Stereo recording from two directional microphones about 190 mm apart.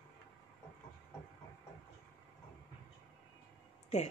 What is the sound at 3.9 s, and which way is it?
Speech, 35° left (ahead or behind).